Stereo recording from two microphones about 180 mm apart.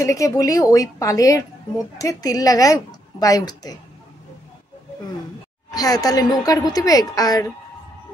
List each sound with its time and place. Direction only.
0.0 s a woman's voice: 20° left (ahead or behind)
5.8 s a woman's voice: 20° left (ahead or behind)